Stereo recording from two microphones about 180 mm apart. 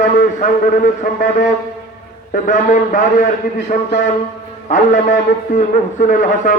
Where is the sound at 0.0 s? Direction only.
45° left (ahead or behind).